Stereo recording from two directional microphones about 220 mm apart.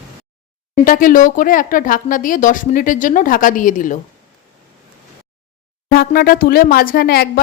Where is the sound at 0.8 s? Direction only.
40° left (ahead or behind).